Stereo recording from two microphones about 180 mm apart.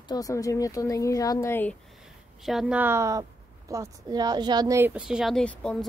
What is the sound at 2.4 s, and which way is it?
A woman's voice, 5° right (ahead or behind).